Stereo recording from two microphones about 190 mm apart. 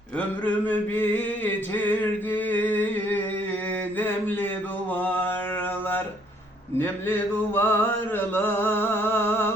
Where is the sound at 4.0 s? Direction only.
10° left (ahead or behind).